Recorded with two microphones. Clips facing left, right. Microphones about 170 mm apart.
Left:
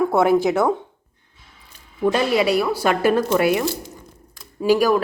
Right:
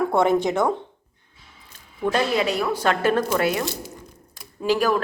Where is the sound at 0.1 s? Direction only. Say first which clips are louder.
Left 3 dB; 5° left (ahead or behind).